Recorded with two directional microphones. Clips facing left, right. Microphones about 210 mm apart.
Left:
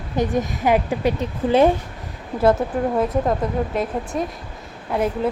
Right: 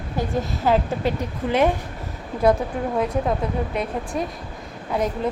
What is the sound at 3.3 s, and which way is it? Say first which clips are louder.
A woman's voice: left 2 dB; centre (ahead or behind).